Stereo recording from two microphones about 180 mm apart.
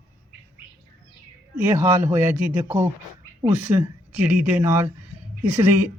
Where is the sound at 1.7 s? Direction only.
15° right (ahead or behind).